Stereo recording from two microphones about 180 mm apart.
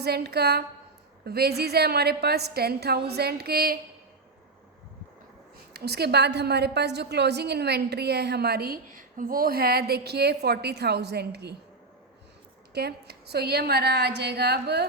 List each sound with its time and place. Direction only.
0.0 s a woman's voice: 65° right (ahead or behind)
5.7 s a woman's voice: 65° right (ahead or behind)
12.7 s a woman's voice: 65° right (ahead or behind)